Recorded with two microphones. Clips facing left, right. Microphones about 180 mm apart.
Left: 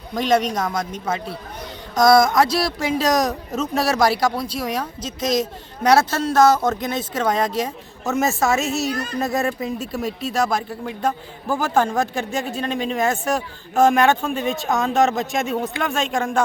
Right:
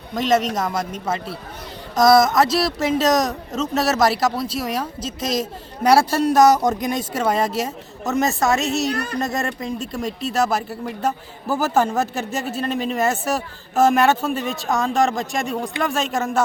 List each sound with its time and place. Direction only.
0.1 s speech: centre (ahead or behind)
8.9 s speech: 65° right (ahead or behind)
9.1 s speech: centre (ahead or behind)